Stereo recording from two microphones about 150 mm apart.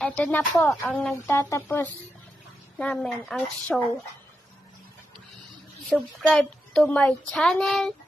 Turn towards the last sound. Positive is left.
turn(degrees=5)  # may be behind; listen again after turning